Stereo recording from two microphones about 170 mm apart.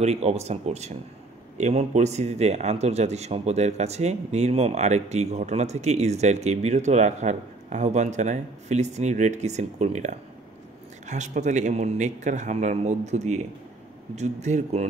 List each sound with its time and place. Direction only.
0.0 s a man's voice: 40° right (ahead or behind)